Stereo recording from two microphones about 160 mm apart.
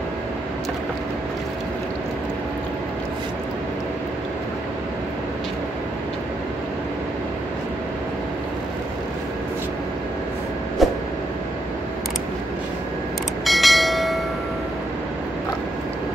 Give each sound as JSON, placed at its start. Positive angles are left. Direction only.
{"t": 10.8, "sound": "vehicle", "side_deg": 0}
{"t": 13.5, "sound": "train", "side_deg": 0}